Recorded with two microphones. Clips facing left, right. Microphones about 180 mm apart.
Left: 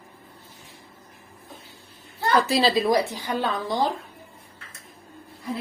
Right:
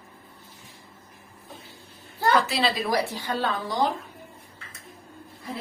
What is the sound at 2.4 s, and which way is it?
A woman's voice, 30° left (ahead or behind).